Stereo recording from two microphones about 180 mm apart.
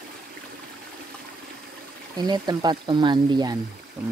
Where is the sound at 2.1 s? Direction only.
25° right (ahead or behind).